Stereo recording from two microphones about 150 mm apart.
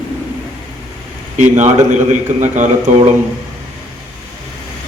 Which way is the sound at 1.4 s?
50° right (ahead or behind).